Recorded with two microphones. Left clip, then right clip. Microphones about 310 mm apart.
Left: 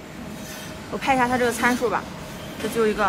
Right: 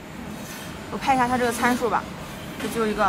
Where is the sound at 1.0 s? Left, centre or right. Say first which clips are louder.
Left 1 dB; centre.